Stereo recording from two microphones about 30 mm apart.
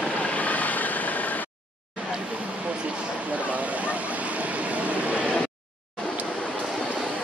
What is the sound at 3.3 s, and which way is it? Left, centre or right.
Waves, right.